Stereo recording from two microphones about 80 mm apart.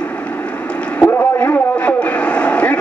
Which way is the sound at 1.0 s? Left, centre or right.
Centre.